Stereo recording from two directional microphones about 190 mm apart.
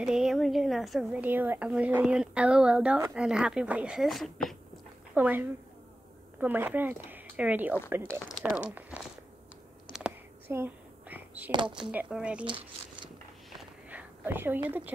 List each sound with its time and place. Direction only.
0.0 s a woman's voice: centre (ahead or behind)
5.1 s a woman's voice: 10° right (ahead or behind)
10.5 s a sound: 10° right (ahead or behind)
11.5 s speech: 25° right (ahead or behind)
11.8 s a woman's voice: 5° right (ahead or behind)
13.5 s a sound: 5° right (ahead or behind)